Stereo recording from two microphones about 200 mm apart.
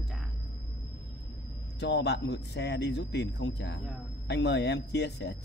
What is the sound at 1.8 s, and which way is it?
Speech, 60° left (ahead or behind).